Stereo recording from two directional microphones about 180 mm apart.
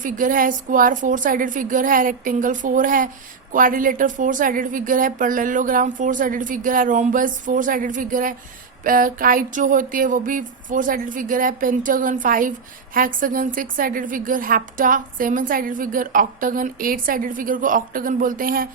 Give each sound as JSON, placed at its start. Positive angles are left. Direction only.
{"t": 0.0, "sound": "speech", "side_deg": -50}